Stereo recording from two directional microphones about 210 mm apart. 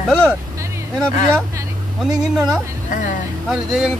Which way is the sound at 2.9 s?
40° left (ahead or behind).